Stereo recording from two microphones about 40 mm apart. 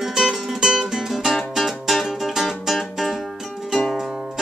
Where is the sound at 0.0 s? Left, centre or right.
Centre.